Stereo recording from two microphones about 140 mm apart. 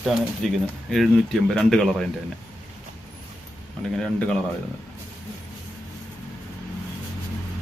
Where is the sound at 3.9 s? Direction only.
5° left (ahead or behind).